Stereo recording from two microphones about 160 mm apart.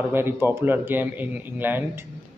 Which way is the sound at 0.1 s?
15° right (ahead or behind).